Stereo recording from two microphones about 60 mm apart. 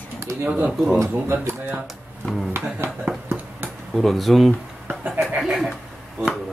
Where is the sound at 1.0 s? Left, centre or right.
Right.